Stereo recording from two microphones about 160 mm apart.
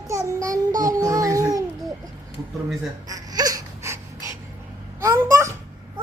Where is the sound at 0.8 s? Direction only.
20° right (ahead or behind).